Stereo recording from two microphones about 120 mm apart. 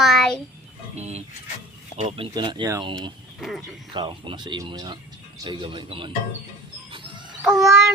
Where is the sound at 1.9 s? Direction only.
55° right (ahead or behind).